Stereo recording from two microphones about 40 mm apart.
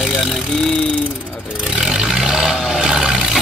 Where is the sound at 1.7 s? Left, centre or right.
Centre.